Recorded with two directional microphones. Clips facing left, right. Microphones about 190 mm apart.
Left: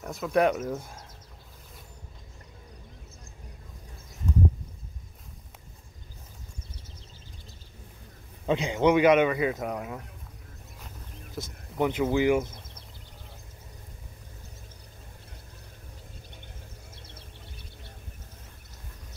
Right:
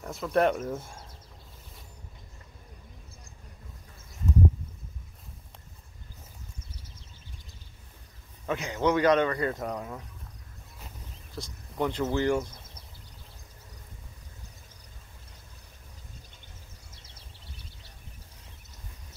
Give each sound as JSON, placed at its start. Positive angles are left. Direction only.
{"t": 0.0, "sound": "speech", "side_deg": 0}
{"t": 8.5, "sound": "speech", "side_deg": 15}
{"t": 11.3, "sound": "a sound", "side_deg": 20}
{"t": 11.8, "sound": "speech", "side_deg": 10}